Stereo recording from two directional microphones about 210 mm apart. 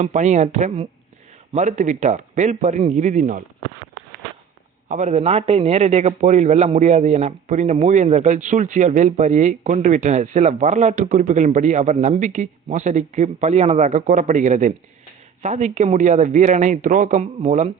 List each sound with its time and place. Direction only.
0.0 s a man's voice: 35° right (ahead or behind)
4.9 s a man's voice: 35° right (ahead or behind)